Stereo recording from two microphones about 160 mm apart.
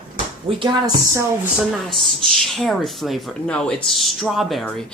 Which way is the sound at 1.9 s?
Centre (ahead or behind).